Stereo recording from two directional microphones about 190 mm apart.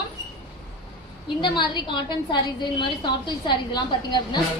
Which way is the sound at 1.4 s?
25° left (ahead or behind).